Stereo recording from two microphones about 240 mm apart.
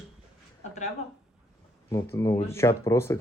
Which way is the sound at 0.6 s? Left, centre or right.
Left.